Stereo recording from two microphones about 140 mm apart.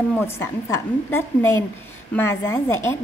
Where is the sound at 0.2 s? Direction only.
15° left (ahead or behind).